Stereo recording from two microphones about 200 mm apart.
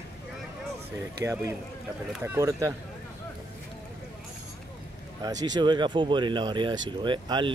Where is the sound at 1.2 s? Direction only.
15° right (ahead or behind).